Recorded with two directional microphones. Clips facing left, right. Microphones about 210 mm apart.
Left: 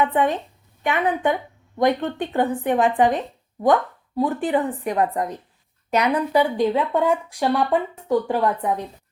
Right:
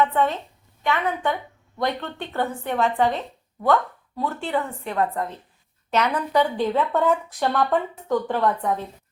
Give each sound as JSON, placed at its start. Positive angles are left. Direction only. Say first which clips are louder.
{"t": 0.0, "sound": "speech", "louder": "left 1 dB", "side_deg": 15}